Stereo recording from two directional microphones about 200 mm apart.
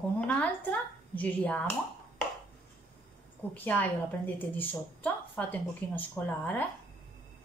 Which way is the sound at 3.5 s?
10° left (ahead or behind).